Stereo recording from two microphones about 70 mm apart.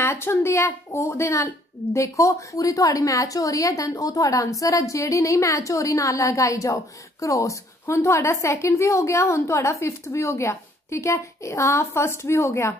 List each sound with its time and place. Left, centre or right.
0.0 s speech: left